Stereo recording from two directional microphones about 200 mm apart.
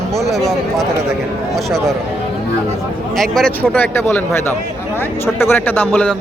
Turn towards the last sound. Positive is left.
turn(degrees=5)  # may be behind; listen again after turning